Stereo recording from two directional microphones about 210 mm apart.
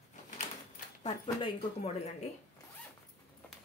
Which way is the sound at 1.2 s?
25° left (ahead or behind).